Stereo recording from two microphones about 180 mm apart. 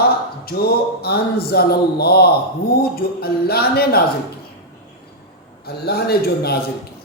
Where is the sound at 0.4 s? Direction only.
60° left (ahead or behind).